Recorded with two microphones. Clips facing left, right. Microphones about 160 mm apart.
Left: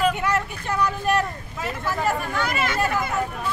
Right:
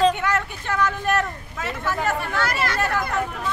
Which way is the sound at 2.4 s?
Centre (ahead or behind).